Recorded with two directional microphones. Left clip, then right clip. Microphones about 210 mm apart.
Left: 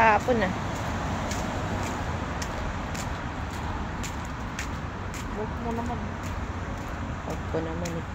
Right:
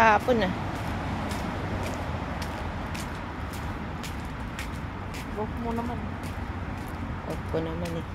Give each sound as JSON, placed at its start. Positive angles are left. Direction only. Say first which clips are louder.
{"t": 0.0, "sound": "speech", "louder": "even", "side_deg": -15}